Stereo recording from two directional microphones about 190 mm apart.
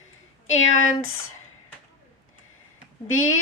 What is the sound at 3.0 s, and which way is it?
Speech, 90° left.